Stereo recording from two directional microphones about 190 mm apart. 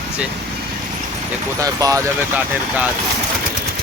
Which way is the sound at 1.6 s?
15° right (ahead or behind).